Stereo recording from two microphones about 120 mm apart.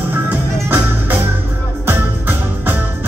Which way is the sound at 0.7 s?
15° right (ahead or behind).